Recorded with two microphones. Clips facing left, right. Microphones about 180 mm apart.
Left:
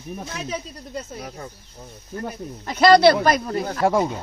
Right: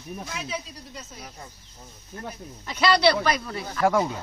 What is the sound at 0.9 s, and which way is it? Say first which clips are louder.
Speech: left 11 dB; 60° left (ahead or behind).